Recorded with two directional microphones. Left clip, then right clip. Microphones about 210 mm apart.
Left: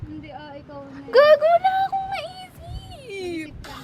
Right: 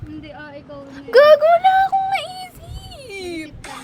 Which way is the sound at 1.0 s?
15° right (ahead or behind).